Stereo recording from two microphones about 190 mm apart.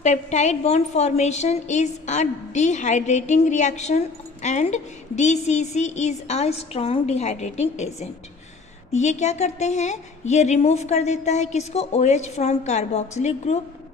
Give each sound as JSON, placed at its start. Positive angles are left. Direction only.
{"t": 0.0, "sound": "a woman's voice", "side_deg": 35}